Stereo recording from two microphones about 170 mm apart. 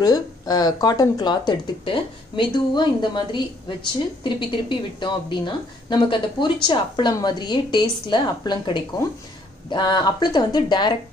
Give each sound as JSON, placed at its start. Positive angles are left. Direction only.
{"t": 0.0, "sound": "speech", "side_deg": 20}